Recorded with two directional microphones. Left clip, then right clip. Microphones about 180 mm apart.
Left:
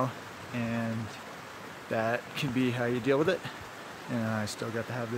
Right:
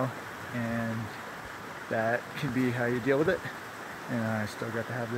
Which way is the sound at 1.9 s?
25° left (ahead or behind).